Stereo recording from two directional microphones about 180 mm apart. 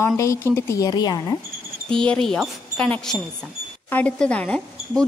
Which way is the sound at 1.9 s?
5° left (ahead or behind).